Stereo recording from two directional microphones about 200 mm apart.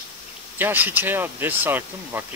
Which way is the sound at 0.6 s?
10° right (ahead or behind).